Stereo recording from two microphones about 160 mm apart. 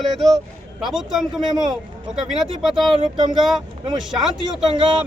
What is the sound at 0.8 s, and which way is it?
Speech, centre (ahead or behind).